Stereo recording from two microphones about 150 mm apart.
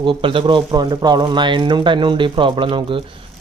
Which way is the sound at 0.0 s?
35° right (ahead or behind).